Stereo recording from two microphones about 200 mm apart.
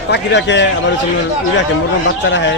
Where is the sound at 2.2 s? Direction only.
60° left (ahead or behind).